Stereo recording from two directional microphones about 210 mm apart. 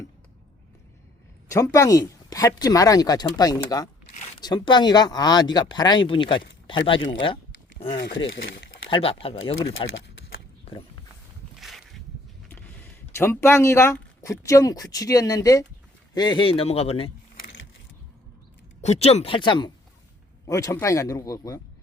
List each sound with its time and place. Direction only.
1.5 s speech: 15° left (ahead or behind)
8.3 s speech: 60° left (ahead or behind)
8.9 s speech: 25° left (ahead or behind)
9.9 s a sound: 55° left (ahead or behind)
11.6 s a sound: centre (ahead or behind)
13.1 s speech: 10° left (ahead or behind); by 17.1 s 30° left (ahead or behind)
18.8 s speech: 30° left (ahead or behind); by 21.6 s 15° left (ahead or behind)